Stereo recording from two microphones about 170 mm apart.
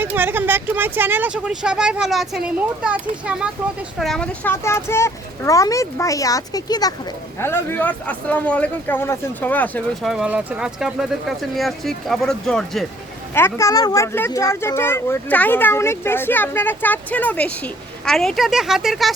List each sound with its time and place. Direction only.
0.0 s speech: 10° right (ahead or behind); by 6.9 s 25° left (ahead or behind)
7.3 s speech: 10° left (ahead or behind)
10.1 s speech: 5° right (ahead or behind)
13.3 s speech: 15° left (ahead or behind); by 19.1 s centre (ahead or behind)